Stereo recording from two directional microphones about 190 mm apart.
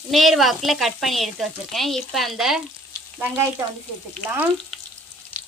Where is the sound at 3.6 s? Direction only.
15° right (ahead or behind).